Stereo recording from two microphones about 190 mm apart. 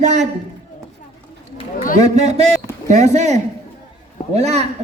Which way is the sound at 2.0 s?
35° right (ahead or behind).